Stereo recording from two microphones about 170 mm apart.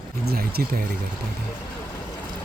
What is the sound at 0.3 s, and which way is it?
Speech, 65° right (ahead or behind).